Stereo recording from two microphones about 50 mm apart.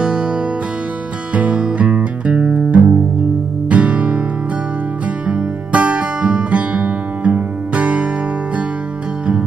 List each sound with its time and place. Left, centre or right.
0.0 s music: centre
1.3 s music: right
5.2 s music: right